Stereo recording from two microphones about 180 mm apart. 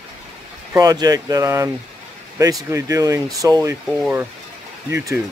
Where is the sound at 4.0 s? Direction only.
10° right (ahead or behind).